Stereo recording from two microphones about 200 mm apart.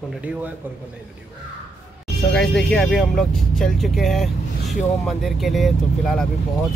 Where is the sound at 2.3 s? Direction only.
5° left (ahead or behind).